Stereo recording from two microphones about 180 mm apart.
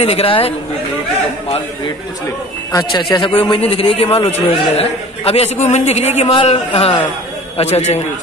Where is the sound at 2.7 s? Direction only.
25° left (ahead or behind).